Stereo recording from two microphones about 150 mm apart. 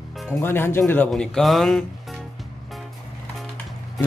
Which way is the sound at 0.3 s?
15° left (ahead or behind).